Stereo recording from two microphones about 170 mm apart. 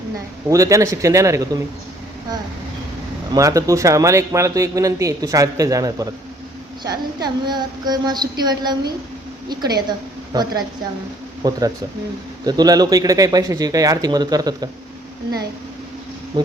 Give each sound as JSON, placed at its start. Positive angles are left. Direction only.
{"t": 0.5, "sound": "speech", "side_deg": -20}
{"t": 3.3, "sound": "speech", "side_deg": -20}
{"t": 16.3, "sound": "insect", "side_deg": -25}